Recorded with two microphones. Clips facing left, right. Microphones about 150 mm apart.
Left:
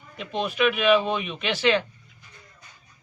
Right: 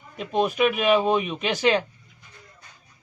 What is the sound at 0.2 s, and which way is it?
Speech, 40° right (ahead or behind).